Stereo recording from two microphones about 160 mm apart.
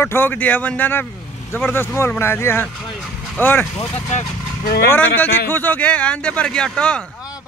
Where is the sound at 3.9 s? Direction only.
40° left (ahead or behind).